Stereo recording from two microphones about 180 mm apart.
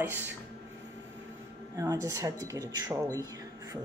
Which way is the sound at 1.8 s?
20° right (ahead or behind).